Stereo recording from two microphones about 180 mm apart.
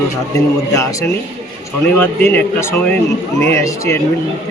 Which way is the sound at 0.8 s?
15° left (ahead or behind).